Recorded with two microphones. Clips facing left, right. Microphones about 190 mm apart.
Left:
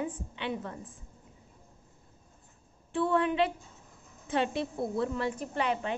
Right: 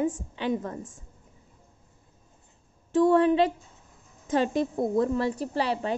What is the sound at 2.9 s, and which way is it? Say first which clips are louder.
A woman's voice: right 7 dB; 40° right (ahead or behind).